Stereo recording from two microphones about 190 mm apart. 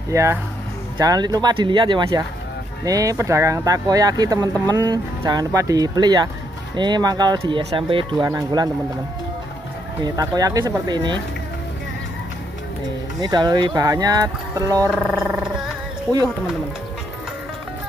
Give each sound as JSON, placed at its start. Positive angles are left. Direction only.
{"t": 0.1, "sound": "speech", "side_deg": -15}
{"t": 10.0, "sound": "speech", "side_deg": -20}
{"t": 13.2, "sound": "speech", "side_deg": -20}
{"t": 14.9, "sound": "wild animals", "side_deg": -5}